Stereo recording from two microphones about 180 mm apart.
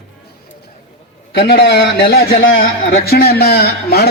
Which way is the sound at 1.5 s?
70° left (ahead or behind).